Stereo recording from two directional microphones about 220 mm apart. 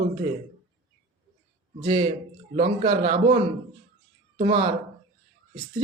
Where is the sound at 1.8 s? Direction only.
25° right (ahead or behind).